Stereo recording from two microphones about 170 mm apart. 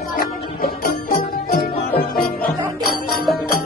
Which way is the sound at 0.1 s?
55° left (ahead or behind).